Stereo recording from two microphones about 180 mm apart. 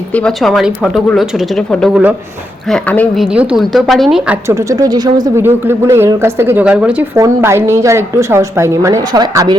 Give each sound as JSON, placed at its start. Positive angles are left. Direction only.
{"t": 0.1, "sound": "a woman's voice", "side_deg": 5}
{"t": 3.3, "sound": "a woman's voice", "side_deg": -5}
{"t": 4.4, "sound": "speech", "side_deg": -15}